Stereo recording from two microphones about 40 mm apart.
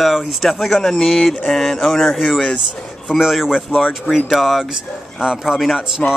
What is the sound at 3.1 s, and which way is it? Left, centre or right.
Speech, centre.